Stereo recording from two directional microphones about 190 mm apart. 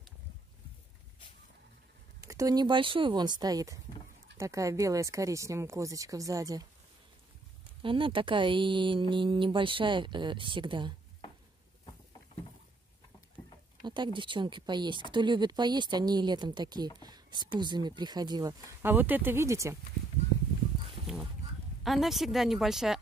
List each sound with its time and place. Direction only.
2.2 s speech: 20° right (ahead or behind)
7.8 s speech: 25° right (ahead or behind)
13.8 s speech: 25° right (ahead or behind)
21.8 s speech: centre (ahead or behind)